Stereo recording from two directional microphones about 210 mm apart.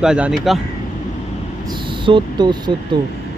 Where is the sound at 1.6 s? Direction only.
20° right (ahead or behind).